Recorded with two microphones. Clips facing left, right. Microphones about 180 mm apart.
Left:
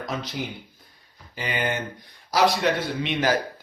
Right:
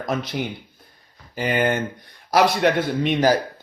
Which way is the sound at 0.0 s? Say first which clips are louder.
Right 6 dB; 55° right (ahead or behind).